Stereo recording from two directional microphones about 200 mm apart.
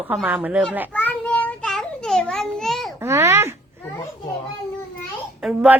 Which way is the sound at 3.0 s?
15° right (ahead or behind).